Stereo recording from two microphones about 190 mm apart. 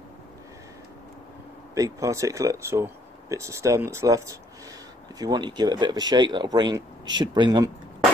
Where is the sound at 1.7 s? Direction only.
15° right (ahead or behind).